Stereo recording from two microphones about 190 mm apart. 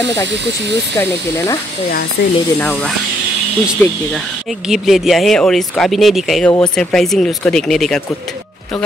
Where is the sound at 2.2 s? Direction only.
55° left (ahead or behind).